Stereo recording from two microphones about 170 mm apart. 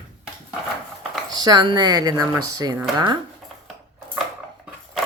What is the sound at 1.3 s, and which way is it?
Speech, 25° right (ahead or behind).